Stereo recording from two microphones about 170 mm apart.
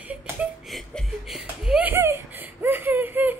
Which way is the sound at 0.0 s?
10° right (ahead or behind).